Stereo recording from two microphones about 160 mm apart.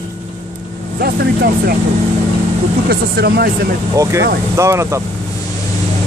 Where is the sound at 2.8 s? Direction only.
80° right.